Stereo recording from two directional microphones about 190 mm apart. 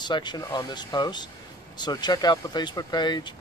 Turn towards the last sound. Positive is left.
turn(degrees=25)  # may be behind; listen again after turning